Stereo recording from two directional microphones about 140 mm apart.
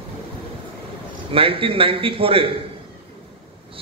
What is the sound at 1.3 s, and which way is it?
A man's voice, 40° right (ahead or behind).